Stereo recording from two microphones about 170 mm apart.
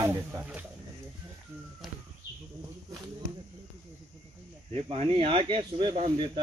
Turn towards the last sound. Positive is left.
turn(degrees=-30)  # may be behind; listen again after turning